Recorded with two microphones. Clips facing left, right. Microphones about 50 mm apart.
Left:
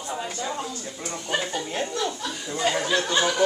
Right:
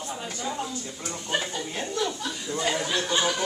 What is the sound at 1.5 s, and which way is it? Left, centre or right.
Chuckle, left.